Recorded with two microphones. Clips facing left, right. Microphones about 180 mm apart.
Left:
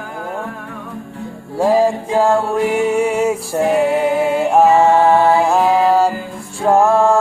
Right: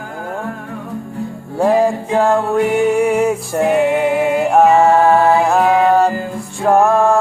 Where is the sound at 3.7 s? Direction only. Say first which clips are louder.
Right 1 dB; 35° left (ahead or behind).